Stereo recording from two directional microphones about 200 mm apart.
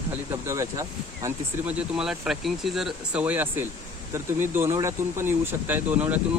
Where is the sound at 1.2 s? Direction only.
5° right (ahead or behind).